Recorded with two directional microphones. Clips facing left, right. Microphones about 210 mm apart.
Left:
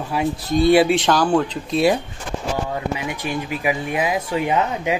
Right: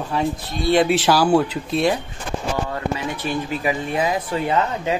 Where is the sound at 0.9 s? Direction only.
5° right (ahead or behind).